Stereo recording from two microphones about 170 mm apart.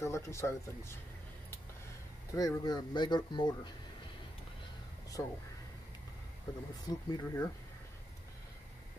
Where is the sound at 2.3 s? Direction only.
20° left (ahead or behind).